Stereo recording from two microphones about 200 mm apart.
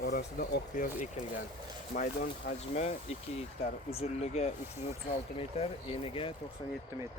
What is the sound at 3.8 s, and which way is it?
Speech, 30° left (ahead or behind).